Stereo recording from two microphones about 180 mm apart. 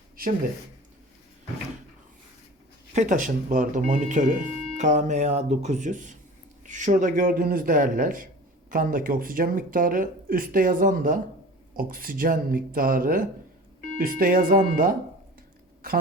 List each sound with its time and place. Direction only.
0.2 s speech: 55° right (ahead or behind)
2.9 s speech: 45° right (ahead or behind)